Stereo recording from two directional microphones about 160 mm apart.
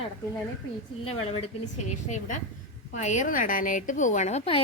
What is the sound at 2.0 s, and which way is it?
A woman's voice, 50° left (ahead or behind).